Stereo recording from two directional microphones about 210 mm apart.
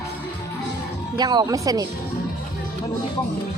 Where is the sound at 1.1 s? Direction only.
20° right (ahead or behind).